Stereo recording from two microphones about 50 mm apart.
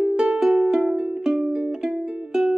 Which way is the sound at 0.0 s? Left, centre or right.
Centre.